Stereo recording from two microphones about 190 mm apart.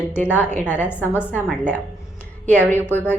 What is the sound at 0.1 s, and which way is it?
A woman's voice, 10° left (ahead or behind).